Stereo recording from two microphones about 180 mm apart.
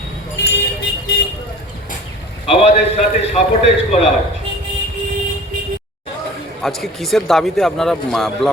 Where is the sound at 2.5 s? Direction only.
35° left (ahead or behind).